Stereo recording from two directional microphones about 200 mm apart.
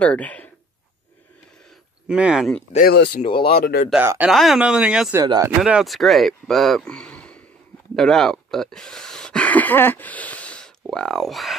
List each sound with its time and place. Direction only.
0.0 s speech: 5° left (ahead or behind)
2.0 s speech: 5° right (ahead or behind)
2.7 s speech: 50° left (ahead or behind)
3.2 s speech: 25° left (ahead or behind)
3.5 s speech: 50° left (ahead or behind)
3.9 s speech: 10° right (ahead or behind)
5.2 s speech: 20° right (ahead or behind)
5.6 s speech: centre (ahead or behind)